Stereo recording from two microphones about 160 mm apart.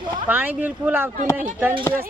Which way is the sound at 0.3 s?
10° right (ahead or behind).